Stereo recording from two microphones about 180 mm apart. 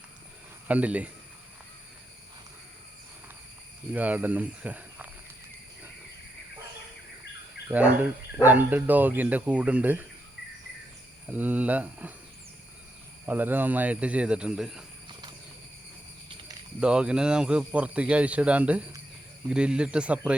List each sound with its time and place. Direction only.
0.7 s speech: 10° right (ahead or behind)
3.9 s speech: 10° right (ahead or behind)
7.7 s speech: 10° right (ahead or behind)
11.3 s speech: 10° right (ahead or behind)
13.2 s speech: 10° right (ahead or behind)
15.0 s clip-clop: 25° right (ahead or behind)
16.8 s speech: 5° right (ahead or behind)